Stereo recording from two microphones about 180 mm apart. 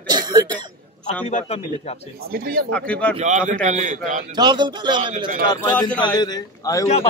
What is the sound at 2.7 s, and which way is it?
Speech, 5° left (ahead or behind).